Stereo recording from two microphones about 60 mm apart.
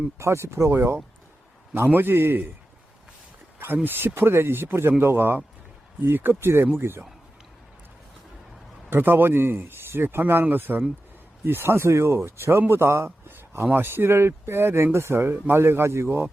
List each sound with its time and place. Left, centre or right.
0.2 s speech: right
3.8 s speech: right
8.9 s speech: right
13.2 s a sound: right
13.7 s speech: right